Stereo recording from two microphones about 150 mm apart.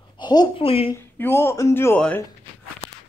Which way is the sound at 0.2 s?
30° left (ahead or behind).